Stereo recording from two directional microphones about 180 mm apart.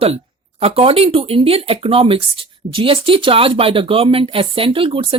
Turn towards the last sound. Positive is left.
turn(degrees=-30)  # may be behind; listen again after turning